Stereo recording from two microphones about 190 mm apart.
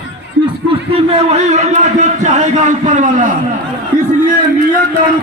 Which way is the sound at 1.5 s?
35° right (ahead or behind).